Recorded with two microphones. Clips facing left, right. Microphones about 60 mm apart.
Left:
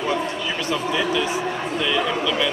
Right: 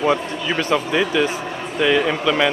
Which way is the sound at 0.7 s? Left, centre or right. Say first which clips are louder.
Right 3 dB; right.